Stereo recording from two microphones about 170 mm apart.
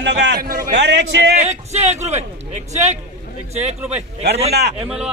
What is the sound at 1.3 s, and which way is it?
Speech, 40° right (ahead or behind).